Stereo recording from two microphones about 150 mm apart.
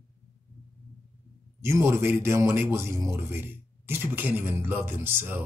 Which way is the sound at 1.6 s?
15° right (ahead or behind).